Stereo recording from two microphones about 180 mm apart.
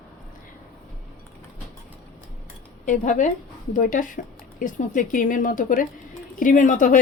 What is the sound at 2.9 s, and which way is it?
Speech, 45° left (ahead or behind).